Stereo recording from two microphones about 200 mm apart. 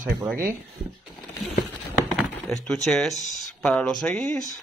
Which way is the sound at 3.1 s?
40° left (ahead or behind).